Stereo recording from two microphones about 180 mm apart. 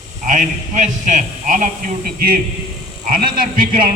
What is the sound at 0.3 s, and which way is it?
A man's voice, 45° right (ahead or behind).